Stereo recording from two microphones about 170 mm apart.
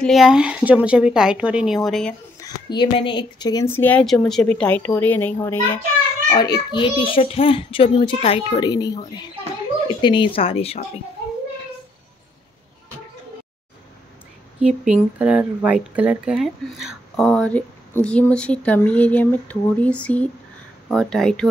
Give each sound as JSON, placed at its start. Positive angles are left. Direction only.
{"t": 0.0, "sound": "speech", "side_deg": 0}
{"t": 2.4, "sound": "speech", "side_deg": 25}
{"t": 3.6, "sound": "a woman's voice", "side_deg": 10}
{"t": 6.3, "sound": "a child's voice", "side_deg": 25}
{"t": 10.0, "sound": "speech", "side_deg": 30}
{"t": 14.6, "sound": "speech", "side_deg": -5}